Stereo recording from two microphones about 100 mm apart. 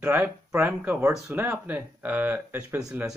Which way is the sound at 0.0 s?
15° right (ahead or behind).